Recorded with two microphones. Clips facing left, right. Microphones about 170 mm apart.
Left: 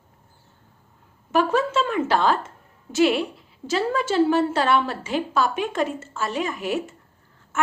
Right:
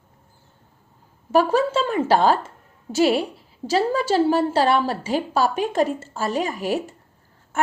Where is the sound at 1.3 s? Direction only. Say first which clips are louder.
Right 2 dB; 35° right (ahead or behind).